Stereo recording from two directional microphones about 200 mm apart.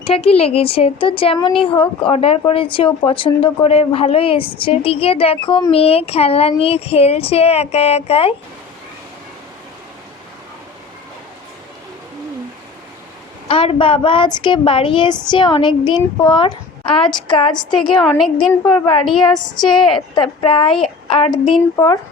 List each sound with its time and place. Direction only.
0.0 s speech: 30° left (ahead or behind)
13.5 s speech: 25° left (ahead or behind)
18.0 s a woman's voice: centre (ahead or behind)
18.6 s speech: 25° left (ahead or behind)